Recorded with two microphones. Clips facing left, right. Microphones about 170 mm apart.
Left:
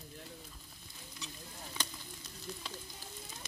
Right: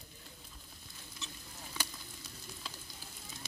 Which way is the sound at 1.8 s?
10° right (ahead or behind).